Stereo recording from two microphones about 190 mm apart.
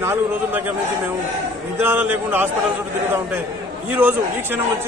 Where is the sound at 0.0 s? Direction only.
10° right (ahead or behind).